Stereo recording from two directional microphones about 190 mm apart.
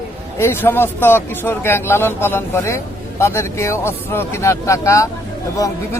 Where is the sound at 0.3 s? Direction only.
10° left (ahead or behind).